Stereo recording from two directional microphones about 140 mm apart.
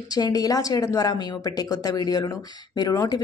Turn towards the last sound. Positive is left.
turn(degrees=25)  # may be behind; listen again after turning